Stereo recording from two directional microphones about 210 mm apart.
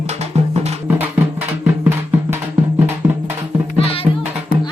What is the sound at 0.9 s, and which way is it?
Music, 10° right (ahead or behind).